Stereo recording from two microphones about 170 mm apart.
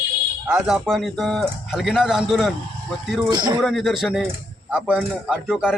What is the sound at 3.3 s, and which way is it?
Speech, 25° right (ahead or behind).